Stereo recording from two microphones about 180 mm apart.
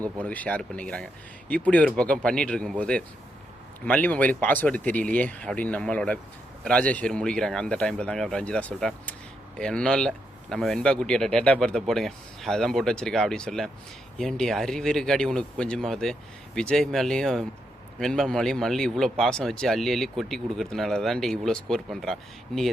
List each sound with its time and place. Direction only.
0.0 s speech: 5° left (ahead or behind)